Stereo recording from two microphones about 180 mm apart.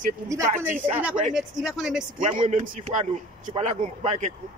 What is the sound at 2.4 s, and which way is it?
A man's voice, 40° right (ahead or behind).